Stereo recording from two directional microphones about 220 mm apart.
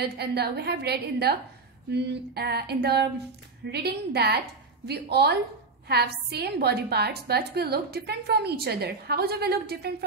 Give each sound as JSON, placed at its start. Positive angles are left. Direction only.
{"t": 0.0, "sound": "a woman's voice", "side_deg": -45}